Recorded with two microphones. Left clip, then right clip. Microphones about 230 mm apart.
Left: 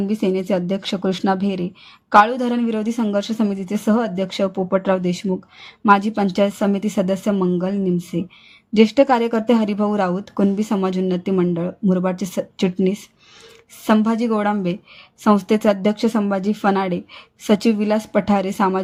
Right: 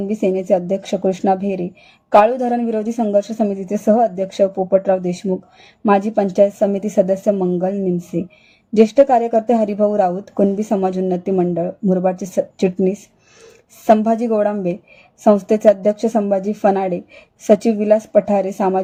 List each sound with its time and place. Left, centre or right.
0.1 s speech: left